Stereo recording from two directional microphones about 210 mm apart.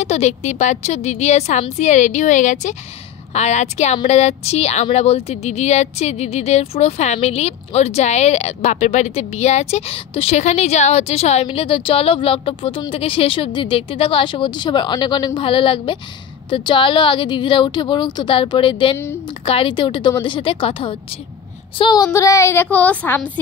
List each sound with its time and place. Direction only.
0.0 s a woman's voice: 30° left (ahead or behind); by 23.4 s 10° left (ahead or behind)